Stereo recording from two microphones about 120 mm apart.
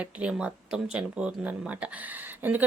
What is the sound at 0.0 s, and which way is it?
A woman's voice, 10° right (ahead or behind).